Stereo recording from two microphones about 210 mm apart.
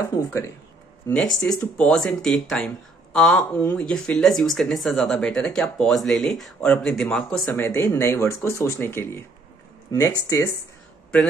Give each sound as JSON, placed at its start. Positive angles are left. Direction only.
{"t": 0.0, "sound": "speech", "side_deg": 10}